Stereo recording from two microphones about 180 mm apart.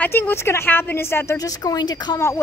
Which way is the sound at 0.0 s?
10° left (ahead or behind).